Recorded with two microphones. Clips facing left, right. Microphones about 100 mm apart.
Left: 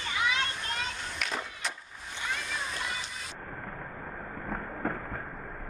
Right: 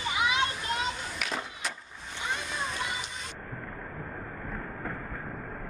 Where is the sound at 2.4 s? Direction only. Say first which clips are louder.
Right 2 dB; centre (ahead or behind).